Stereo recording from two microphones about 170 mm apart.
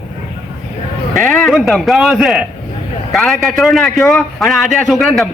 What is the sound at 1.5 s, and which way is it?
A man's voice, centre (ahead or behind).